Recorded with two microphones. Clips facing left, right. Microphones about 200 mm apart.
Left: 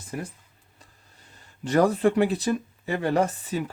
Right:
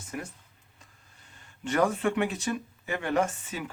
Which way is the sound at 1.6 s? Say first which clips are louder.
Left 5 dB; 35° left (ahead or behind).